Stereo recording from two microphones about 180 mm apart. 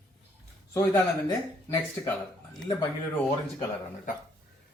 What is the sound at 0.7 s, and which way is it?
Speech, 15° left (ahead or behind).